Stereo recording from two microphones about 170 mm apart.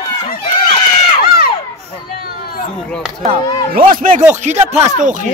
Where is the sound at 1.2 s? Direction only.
60° left (ahead or behind).